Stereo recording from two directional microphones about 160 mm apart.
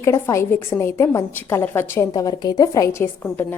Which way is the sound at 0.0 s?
20° left (ahead or behind).